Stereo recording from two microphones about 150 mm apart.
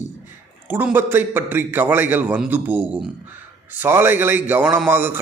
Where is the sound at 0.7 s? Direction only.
15° right (ahead or behind).